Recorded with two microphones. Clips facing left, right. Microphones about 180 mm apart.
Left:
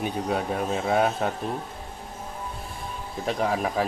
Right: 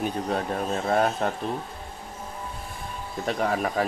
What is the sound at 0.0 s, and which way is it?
Speech, 5° left (ahead or behind).